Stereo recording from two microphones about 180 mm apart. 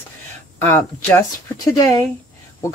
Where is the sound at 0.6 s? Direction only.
10° left (ahead or behind).